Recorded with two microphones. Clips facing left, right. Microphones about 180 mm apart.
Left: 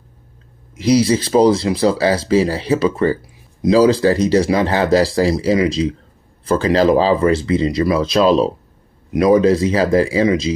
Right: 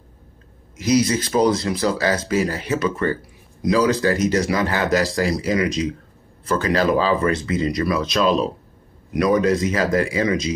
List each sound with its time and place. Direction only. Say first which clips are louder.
0.8 s speech: left 4 dB; 30° left (ahead or behind)